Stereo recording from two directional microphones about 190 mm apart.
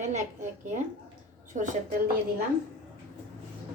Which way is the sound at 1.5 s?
40° right (ahead or behind).